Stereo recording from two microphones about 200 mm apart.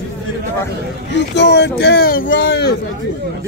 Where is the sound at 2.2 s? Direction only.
65° left (ahead or behind).